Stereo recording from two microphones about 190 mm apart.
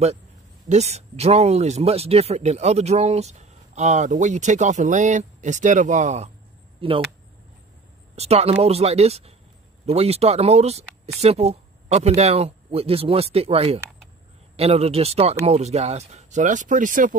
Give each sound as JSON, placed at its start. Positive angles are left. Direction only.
{"t": 0.7, "sound": "speech", "side_deg": -35}
{"t": 8.2, "sound": "speech", "side_deg": -35}